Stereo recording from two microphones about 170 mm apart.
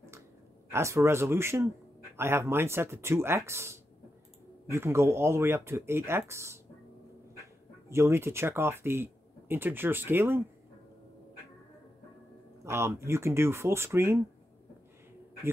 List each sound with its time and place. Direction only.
0.7 s speech: 15° right (ahead or behind)
7.9 s speech: 15° right (ahead or behind)
12.6 s speech: 15° right (ahead or behind)